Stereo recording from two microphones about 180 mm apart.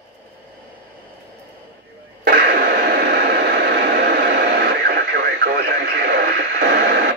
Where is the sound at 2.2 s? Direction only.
60° right (ahead or behind).